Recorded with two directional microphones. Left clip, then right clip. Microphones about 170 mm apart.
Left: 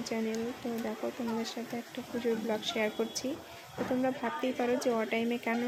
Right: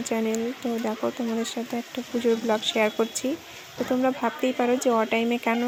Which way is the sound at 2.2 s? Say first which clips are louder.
Right 9 dB; 30° right (ahead or behind).